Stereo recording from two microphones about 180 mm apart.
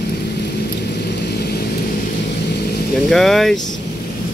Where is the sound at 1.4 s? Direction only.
60° left (ahead or behind).